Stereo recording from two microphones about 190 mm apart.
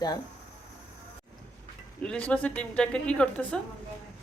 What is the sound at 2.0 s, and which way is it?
Speech, 5° left (ahead or behind).